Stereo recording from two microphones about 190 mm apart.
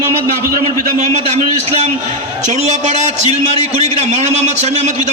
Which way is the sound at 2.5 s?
40° right (ahead or behind).